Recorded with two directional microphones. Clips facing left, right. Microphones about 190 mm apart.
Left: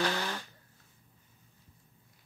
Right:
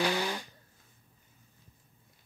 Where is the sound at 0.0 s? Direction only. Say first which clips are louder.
Right 2 dB; 15° right (ahead or behind).